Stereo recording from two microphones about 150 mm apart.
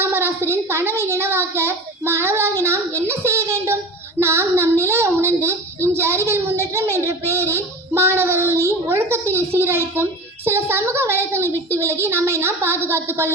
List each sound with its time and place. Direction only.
0.0 s a child's voice: 15° right (ahead or behind)